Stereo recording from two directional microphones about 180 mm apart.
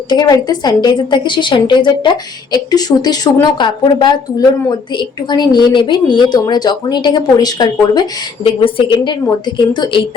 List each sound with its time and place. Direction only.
0.1 s a woman's voice: 25° left (ahead or behind)